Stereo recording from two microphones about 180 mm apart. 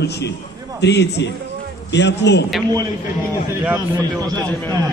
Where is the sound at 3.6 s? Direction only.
10° right (ahead or behind).